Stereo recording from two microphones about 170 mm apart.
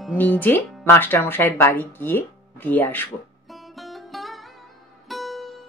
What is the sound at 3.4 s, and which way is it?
Music, centre (ahead or behind).